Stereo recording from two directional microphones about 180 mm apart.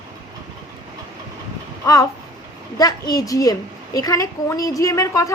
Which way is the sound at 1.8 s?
20° left (ahead or behind).